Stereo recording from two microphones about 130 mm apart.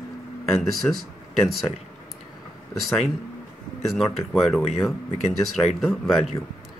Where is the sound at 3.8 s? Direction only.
Centre (ahead or behind).